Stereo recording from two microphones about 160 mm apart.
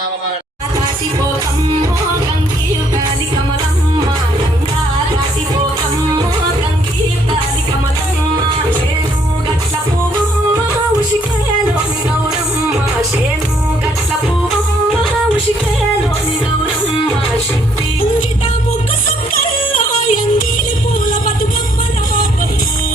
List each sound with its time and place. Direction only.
19.7 s yodeling: 60° left (ahead or behind)